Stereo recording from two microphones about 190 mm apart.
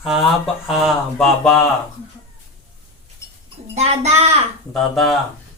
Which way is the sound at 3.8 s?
35° right (ahead or behind).